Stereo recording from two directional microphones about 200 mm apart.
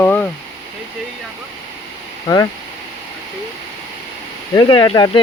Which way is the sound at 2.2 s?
15° left (ahead or behind).